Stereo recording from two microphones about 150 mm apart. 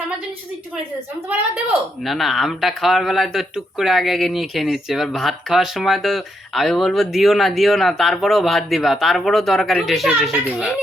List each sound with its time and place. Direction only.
2.0 s speech: centre (ahead or behind)
10.4 s a child's voice: 10° right (ahead or behind)